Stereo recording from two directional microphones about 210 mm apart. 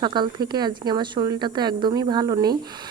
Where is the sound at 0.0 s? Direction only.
20° right (ahead or behind).